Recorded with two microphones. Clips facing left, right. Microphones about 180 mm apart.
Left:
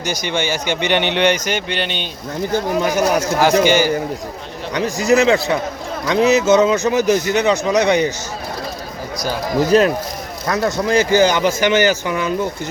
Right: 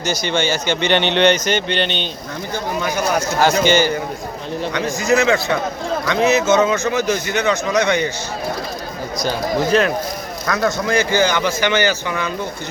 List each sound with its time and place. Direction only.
0.0 s speech: 15° left (ahead or behind)
2.5 s speech: 40° left (ahead or behind)
3.4 s speech: 10° left (ahead or behind)
4.7 s a man's voice: 35° left (ahead or behind)
9.6 s a man's voice: 40° left (ahead or behind)
10.4 s a man's voice: 30° left (ahead or behind)